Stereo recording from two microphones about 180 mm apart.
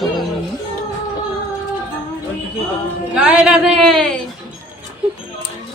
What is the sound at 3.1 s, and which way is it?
Speech, 5° right (ahead or behind).